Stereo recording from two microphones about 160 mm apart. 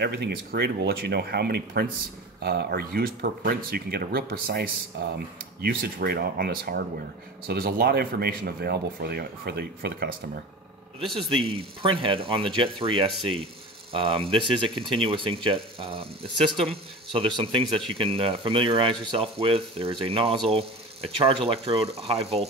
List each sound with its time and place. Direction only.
0.0 s speech: 90° right; by 10.0 s 75° right (ahead or behind)
11.2 s speech: 35° right (ahead or behind)